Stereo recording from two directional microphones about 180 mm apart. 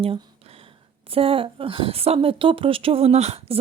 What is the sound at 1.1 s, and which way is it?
A woman's voice, 30° right (ahead or behind).